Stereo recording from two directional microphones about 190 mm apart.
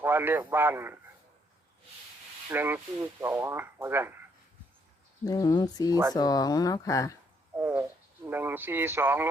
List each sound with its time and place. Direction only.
0.0 s speech: 10° right (ahead or behind)
2.5 s speech: 10° right (ahead or behind)
5.2 s speech: 20° left (ahead or behind)
7.5 s speech: 10° right (ahead or behind)